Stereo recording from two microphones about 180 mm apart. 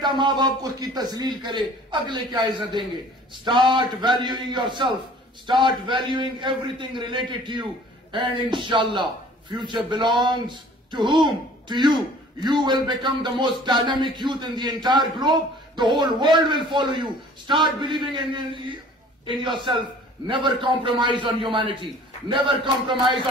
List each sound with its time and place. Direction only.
0.0 s a man's voice: 25° right (ahead or behind)
20.4 s a man's voice: 25° right (ahead or behind)